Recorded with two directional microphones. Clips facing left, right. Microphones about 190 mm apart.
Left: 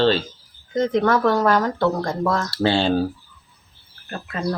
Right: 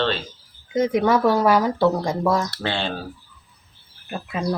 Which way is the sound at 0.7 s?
10° right (ahead or behind).